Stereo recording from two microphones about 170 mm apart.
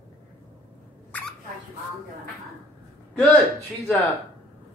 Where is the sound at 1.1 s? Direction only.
10° left (ahead or behind).